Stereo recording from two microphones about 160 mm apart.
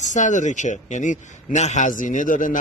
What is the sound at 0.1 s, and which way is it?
Speech, 50° left (ahead or behind).